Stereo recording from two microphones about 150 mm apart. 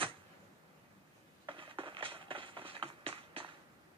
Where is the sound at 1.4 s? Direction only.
35° right (ahead or behind).